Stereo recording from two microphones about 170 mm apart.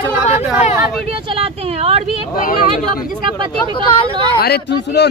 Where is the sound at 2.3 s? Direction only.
55° left (ahead or behind).